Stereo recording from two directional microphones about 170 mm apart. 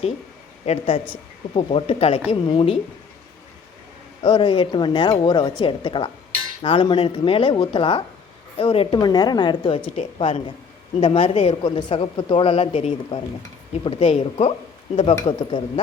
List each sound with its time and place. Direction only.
0.6 s a woman's voice: 35° left (ahead or behind)
4.2 s a woman's voice: 30° left (ahead or behind)
9.9 s a woman's voice: 35° left (ahead or behind)